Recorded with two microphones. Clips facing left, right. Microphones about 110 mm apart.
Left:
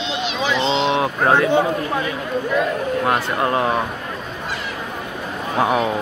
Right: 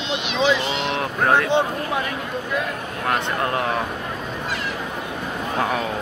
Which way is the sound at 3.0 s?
15° left (ahead or behind).